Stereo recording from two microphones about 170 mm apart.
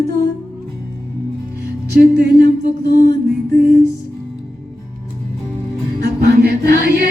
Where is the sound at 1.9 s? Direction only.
65° right (ahead or behind).